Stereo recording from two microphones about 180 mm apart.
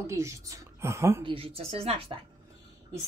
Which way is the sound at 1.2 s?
30° right (ahead or behind).